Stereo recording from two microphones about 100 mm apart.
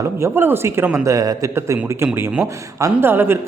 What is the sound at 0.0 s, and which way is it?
A woman's voice, 25° right (ahead or behind).